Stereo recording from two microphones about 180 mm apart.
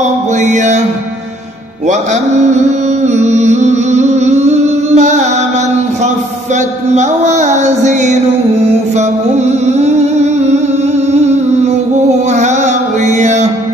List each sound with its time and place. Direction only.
0.4 s music: 40° right (ahead or behind)
3.2 s music: 40° right (ahead or behind)
7.0 s music: 40° right (ahead or behind)
12.4 s music: 40° right (ahead or behind)